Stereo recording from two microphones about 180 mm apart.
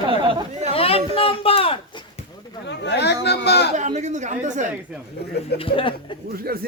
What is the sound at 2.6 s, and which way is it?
Speech, 75° left (ahead or behind).